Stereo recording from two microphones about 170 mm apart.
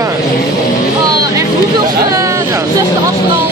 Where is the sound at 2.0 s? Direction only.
20° right (ahead or behind).